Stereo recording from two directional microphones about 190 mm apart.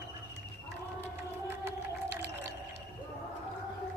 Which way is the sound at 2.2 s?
65° right (ahead or behind).